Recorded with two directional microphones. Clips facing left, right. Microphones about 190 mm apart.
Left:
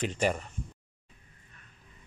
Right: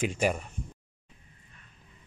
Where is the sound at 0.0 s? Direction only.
10° right (ahead or behind).